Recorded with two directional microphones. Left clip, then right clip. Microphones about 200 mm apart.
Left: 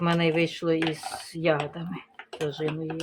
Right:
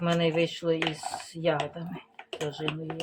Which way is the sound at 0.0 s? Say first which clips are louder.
Left 2 dB; 45° left (ahead or behind).